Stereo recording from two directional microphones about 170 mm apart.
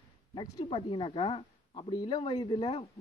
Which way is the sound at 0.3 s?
30° left (ahead or behind).